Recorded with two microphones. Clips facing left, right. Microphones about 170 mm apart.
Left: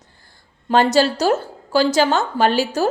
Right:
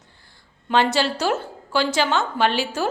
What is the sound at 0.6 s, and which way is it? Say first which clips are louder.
A woman's voice: left 5 dB; 40° left (ahead or behind).